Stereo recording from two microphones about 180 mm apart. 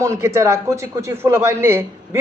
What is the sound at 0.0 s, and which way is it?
A man's voice, 15° right (ahead or behind).